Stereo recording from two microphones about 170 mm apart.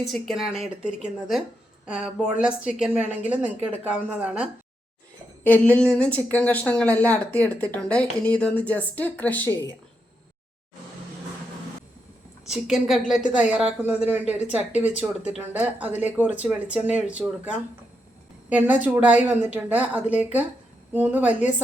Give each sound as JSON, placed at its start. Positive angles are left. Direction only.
{"t": 0.0, "sound": "a woman's voice", "side_deg": 0}
{"t": 5.4, "sound": "a woman's voice", "side_deg": 10}
{"t": 12.5, "sound": "a woman's voice", "side_deg": -5}